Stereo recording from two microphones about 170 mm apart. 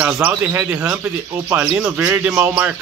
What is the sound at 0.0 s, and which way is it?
A man's voice, 10° right (ahead or behind).